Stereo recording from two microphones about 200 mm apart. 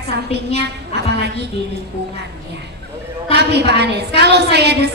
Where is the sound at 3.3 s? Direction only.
55° right (ahead or behind).